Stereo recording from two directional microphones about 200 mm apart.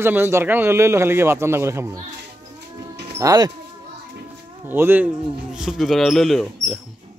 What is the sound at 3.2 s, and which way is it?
Speech, 15° right (ahead or behind).